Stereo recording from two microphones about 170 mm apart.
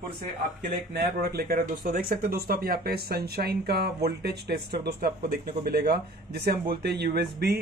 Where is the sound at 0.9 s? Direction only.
60° right (ahead or behind).